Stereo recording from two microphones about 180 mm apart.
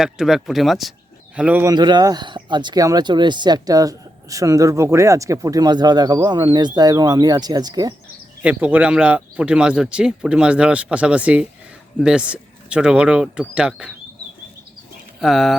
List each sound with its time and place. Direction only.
0.0 s a man's voice: centre (ahead or behind)
1.7 s speech: 25° right (ahead or behind)
8.4 s speech: 5° right (ahead or behind)
15.2 s speech: centre (ahead or behind)